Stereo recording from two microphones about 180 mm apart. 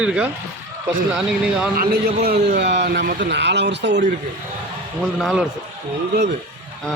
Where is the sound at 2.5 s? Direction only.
70° right (ahead or behind).